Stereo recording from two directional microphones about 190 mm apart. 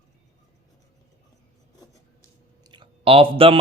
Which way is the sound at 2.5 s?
20° right (ahead or behind).